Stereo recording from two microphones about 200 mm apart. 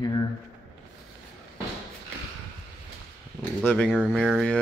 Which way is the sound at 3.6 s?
5° left (ahead or behind).